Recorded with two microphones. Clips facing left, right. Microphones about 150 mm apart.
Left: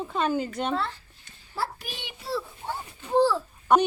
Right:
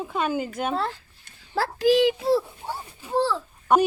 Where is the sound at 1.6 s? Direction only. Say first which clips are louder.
Right 14 dB; 90° right.